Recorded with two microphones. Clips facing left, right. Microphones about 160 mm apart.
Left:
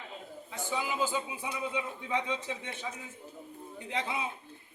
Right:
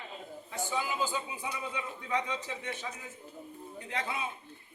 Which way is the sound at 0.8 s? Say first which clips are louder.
Left 2 dB; 20° left (ahead or behind).